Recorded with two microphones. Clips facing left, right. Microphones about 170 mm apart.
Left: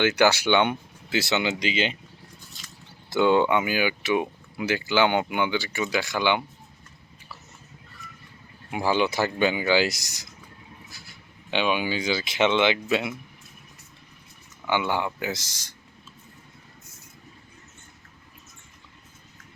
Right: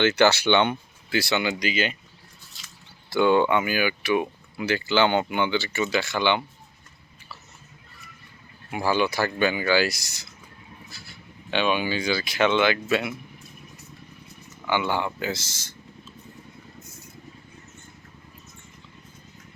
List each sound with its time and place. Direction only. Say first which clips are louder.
0.0 s speech: right 1 dB; 15° left (ahead or behind)
3.1 s speech: even; 15° left (ahead or behind)
8.7 s speech: even; 15° left (ahead or behind)
11.5 s speech: right 1 dB; 15° left (ahead or behind)
14.7 s speech: even; 15° left (ahead or behind)